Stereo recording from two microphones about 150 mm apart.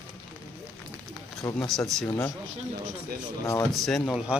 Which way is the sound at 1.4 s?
15° left (ahead or behind).